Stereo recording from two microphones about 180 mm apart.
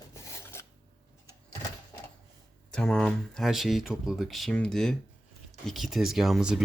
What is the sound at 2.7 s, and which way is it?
Speech, 5° left (ahead or behind).